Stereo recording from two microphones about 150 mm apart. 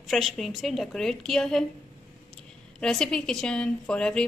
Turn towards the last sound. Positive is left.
turn(degrees=5)  # may be behind; listen again after turning